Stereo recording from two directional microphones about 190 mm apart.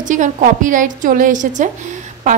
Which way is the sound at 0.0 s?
40° right (ahead or behind).